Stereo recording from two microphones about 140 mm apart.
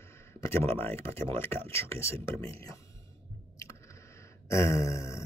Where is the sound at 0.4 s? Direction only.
15° left (ahead or behind).